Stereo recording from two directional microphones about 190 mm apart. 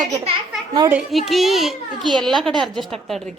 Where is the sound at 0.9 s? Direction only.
Centre (ahead or behind).